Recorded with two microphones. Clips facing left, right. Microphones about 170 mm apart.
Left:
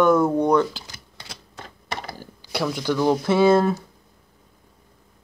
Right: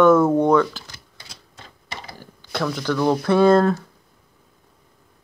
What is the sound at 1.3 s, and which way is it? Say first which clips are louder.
Typewriter: left 6 dB; 65° left (ahead or behind).